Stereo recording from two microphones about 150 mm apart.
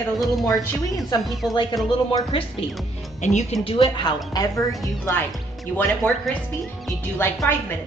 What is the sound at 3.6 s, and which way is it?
A woman's voice, 35° left (ahead or behind).